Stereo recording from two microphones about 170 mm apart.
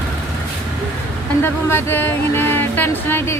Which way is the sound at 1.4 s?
15° left (ahead or behind).